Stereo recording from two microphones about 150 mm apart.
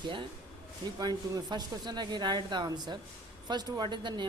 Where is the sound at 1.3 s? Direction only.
25° right (ahead or behind).